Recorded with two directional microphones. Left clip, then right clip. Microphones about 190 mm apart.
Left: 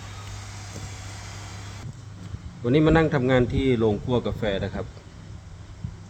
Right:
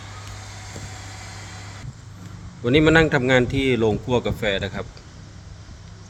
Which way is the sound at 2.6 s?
5° left (ahead or behind).